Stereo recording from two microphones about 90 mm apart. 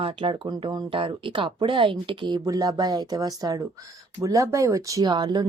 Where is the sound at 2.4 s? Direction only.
45° right (ahead or behind).